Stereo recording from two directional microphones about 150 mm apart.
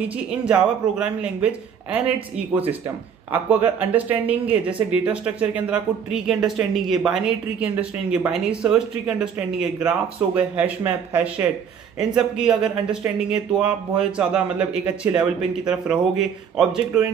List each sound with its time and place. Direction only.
0.5 s speech: 10° right (ahead or behind)